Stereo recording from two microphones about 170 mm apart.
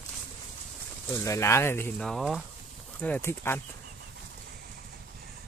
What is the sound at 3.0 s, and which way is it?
Speech, 10° left (ahead or behind).